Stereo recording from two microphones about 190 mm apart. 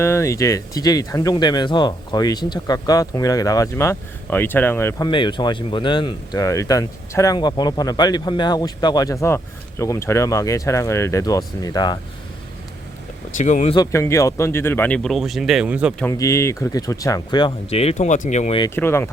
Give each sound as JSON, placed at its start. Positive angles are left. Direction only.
{"t": 0.0, "sound": "speech", "side_deg": 15}
{"t": 13.3, "sound": "speech", "side_deg": 40}
{"t": 13.7, "sound": "speech", "side_deg": 15}
{"t": 16.0, "sound": "speech", "side_deg": 15}
{"t": 18.6, "sound": "speech", "side_deg": 15}